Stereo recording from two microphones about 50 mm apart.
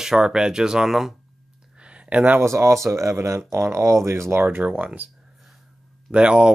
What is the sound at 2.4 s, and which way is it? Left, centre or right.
Speech, right.